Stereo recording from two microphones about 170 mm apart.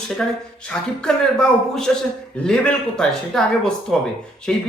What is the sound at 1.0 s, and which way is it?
Speech, 5° left (ahead or behind).